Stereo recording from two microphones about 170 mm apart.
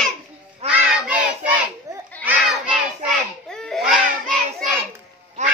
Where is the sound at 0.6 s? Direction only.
40° right (ahead or behind).